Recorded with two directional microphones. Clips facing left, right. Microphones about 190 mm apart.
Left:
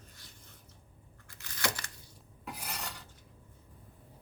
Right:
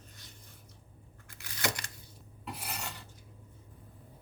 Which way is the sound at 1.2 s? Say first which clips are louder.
Right 1 dB; 15° right (ahead or behind).